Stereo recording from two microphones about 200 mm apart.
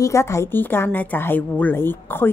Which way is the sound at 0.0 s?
15° left (ahead or behind).